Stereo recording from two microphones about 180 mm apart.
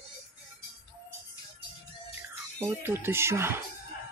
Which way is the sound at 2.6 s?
10° right (ahead or behind).